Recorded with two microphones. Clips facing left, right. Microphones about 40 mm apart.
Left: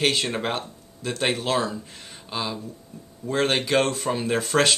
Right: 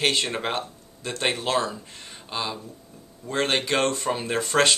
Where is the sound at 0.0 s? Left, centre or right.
Centre.